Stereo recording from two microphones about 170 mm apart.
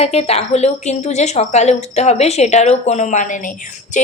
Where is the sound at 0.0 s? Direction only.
35° left (ahead or behind).